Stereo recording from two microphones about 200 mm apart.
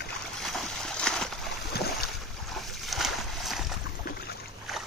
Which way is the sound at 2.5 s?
Centre (ahead or behind).